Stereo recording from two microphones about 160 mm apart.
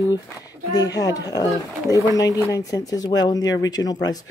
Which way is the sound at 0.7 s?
25° left (ahead or behind).